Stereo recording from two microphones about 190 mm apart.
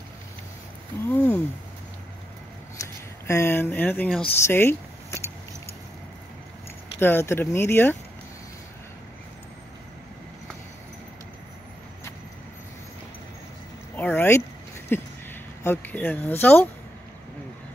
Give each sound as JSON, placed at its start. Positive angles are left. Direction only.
{"t": 1.0, "sound": "speech", "side_deg": 10}
{"t": 3.3, "sound": "speech", "side_deg": 15}
{"t": 4.5, "sound": "a sound", "side_deg": 10}
{"t": 7.0, "sound": "speech", "side_deg": 10}
{"t": 13.9, "sound": "a sound", "side_deg": 10}
{"t": 15.6, "sound": "speech", "side_deg": 10}